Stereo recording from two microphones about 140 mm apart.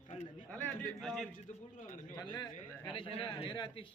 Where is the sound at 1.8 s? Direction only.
70° left (ahead or behind).